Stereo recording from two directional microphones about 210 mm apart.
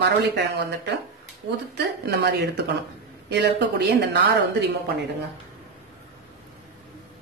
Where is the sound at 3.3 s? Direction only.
50° right (ahead or behind).